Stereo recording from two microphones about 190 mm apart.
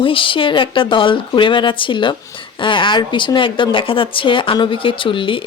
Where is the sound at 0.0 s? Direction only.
25° left (ahead or behind).